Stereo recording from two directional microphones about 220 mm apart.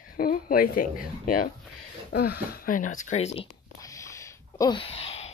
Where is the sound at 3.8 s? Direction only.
15° left (ahead or behind).